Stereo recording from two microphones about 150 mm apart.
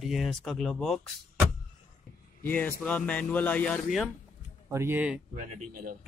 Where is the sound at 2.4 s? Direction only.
10° left (ahead or behind).